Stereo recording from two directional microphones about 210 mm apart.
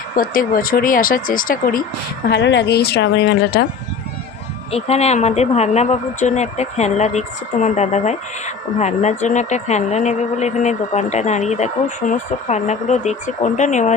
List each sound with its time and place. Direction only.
0.2 s speech: 40° left (ahead or behind)
2.3 s speech: 55° left (ahead or behind)
4.7 s speech: 30° left (ahead or behind)